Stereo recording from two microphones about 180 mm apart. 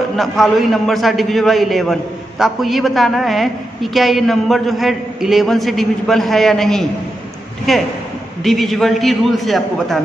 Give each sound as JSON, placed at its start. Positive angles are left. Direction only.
{"t": 0.1, "sound": "a man's voice", "side_deg": 0}